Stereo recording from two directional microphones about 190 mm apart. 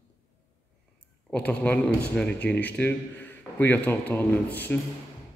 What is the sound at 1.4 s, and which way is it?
A man's voice, 10° left (ahead or behind).